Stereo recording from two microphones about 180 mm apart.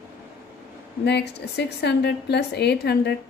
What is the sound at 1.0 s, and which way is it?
A woman's voice, 70° left (ahead or behind).